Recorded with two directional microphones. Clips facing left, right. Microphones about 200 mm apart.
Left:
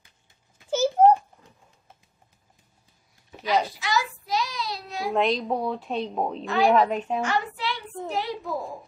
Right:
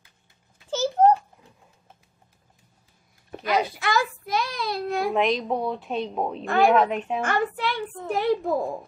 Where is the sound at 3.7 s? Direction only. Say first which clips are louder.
Right 2 dB; 55° right (ahead or behind).